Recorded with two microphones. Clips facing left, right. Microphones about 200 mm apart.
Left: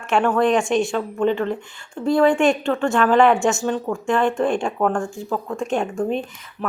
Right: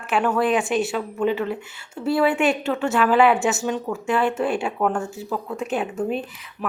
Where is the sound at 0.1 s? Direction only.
5° right (ahead or behind).